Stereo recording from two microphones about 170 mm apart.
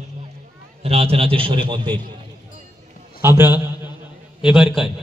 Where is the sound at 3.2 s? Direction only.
15° right (ahead or behind).